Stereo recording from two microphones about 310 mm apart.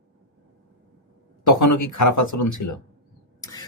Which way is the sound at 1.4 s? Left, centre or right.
Left.